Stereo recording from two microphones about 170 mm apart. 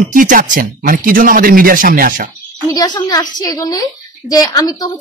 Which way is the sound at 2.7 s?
20° left (ahead or behind).